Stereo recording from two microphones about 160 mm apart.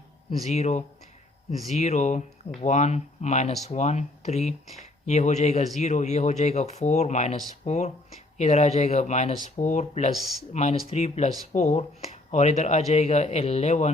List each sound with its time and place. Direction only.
0.4 s speech: 45° left (ahead or behind)